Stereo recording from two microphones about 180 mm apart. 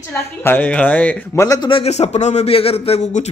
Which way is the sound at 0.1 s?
10° left (ahead or behind).